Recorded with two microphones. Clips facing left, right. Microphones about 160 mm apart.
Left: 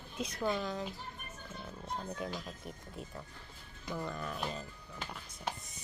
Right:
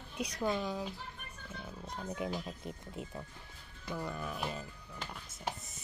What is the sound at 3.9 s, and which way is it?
Speech, 5° right (ahead or behind).